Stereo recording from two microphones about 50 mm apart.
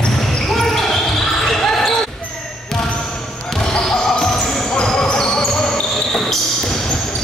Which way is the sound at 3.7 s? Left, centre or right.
Centre.